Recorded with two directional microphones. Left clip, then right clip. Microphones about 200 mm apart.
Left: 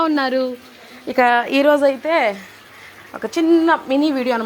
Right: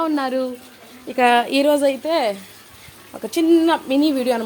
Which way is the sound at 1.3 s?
Centre (ahead or behind).